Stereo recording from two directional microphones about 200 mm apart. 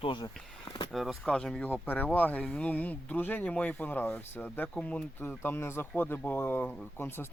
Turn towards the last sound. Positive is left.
turn(degrees=10)  # may be behind; listen again after turning